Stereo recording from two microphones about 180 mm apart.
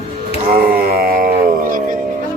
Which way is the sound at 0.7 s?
55° right (ahead or behind).